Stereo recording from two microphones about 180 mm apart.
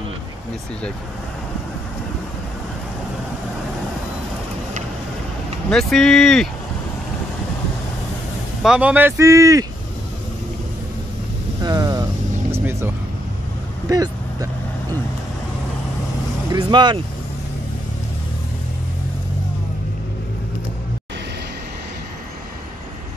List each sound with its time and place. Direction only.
5.7 s speech: centre (ahead or behind)
8.6 s speech: 5° right (ahead or behind)
11.6 s vehicle: 20° right (ahead or behind)
16.5 s speech: 25° right (ahead or behind)